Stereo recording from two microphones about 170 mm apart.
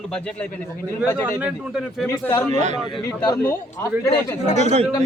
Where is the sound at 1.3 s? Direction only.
5° right (ahead or behind).